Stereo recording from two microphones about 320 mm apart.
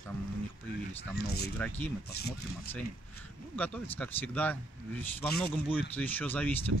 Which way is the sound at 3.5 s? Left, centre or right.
Centre.